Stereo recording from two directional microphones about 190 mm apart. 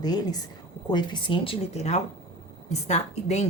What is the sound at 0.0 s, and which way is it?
Speech, 20° left (ahead or behind).